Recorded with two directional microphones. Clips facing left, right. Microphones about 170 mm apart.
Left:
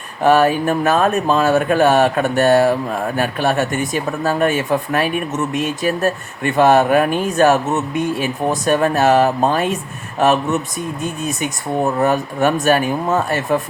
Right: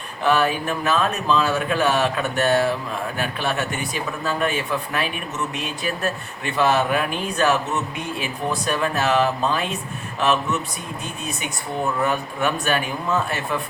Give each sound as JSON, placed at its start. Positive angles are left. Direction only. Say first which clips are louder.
{"t": 0.2, "sound": "speech", "louder": "left 7 dB", "side_deg": 45}